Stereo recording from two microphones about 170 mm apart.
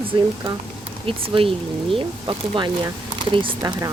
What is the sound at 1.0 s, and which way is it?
Speech, 30° right (ahead or behind).